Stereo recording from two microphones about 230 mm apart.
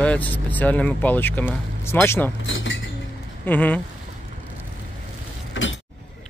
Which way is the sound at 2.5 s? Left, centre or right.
Left.